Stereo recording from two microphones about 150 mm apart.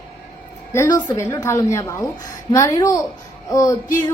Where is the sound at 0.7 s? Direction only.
15° left (ahead or behind).